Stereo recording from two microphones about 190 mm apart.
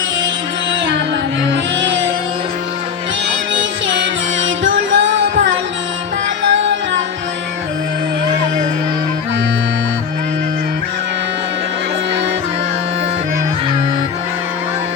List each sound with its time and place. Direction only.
3.5 s music: 75° right (ahead or behind)